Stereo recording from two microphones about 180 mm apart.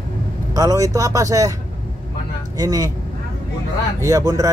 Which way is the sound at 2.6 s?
20° right (ahead or behind).